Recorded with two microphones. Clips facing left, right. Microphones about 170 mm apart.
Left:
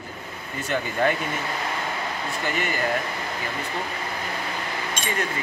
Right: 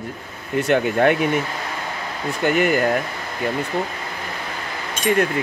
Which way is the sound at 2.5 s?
60° right (ahead or behind).